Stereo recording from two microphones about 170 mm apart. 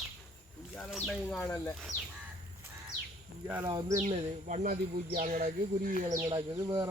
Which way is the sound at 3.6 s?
25° right (ahead or behind).